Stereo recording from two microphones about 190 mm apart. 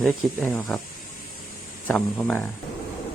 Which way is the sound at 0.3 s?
10° left (ahead or behind).